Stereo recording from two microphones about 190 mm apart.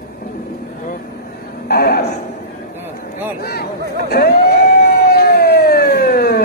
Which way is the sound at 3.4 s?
55° left (ahead or behind).